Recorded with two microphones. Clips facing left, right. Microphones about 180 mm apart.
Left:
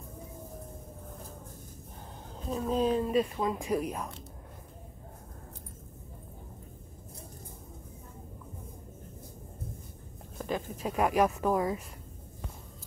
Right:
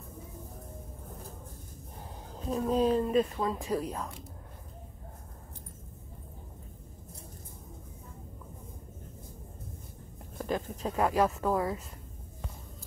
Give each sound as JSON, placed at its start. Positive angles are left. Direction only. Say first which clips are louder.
{"t": 2.6, "sound": "speech", "louder": "right 1 dB", "side_deg": 5}
{"t": 10.4, "sound": "speech", "louder": "right 1 dB", "side_deg": 5}